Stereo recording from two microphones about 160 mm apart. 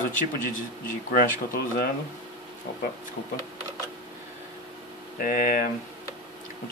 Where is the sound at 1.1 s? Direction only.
70° left (ahead or behind).